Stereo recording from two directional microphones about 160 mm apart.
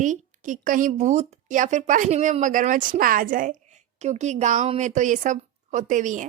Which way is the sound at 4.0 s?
45° right (ahead or behind).